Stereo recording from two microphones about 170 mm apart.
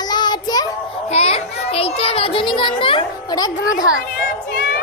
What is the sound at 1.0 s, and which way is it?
A child's voice, 35° left (ahead or behind).